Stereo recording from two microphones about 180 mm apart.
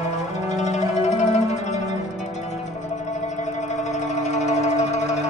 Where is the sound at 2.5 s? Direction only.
40° left (ahead or behind).